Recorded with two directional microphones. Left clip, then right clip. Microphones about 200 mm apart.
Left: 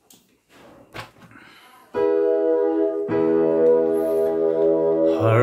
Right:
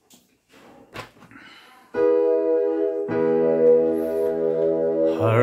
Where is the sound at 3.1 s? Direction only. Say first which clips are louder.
Left 1 dB; 20° right (ahead or behind).